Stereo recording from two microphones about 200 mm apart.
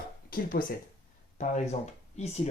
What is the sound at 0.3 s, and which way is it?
Speech, 45° left (ahead or behind).